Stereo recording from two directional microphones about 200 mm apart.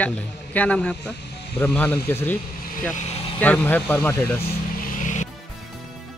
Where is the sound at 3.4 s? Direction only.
10° left (ahead or behind).